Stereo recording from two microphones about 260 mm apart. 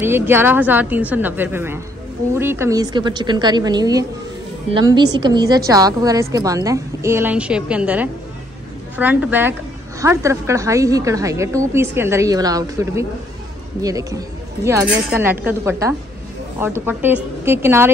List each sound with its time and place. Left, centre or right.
0.0 s a woman's voice: centre